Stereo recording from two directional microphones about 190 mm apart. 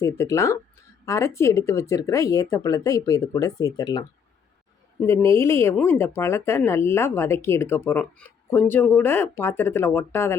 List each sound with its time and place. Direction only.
0.0 s speech: 15° left (ahead or behind)